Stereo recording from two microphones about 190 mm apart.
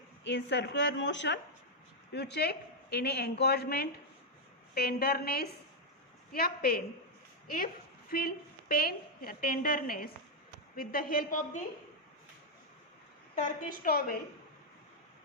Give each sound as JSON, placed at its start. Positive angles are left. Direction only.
{"t": 0.3, "sound": "a woman's voice", "side_deg": 65}
{"t": 13.4, "sound": "a woman's voice", "side_deg": 50}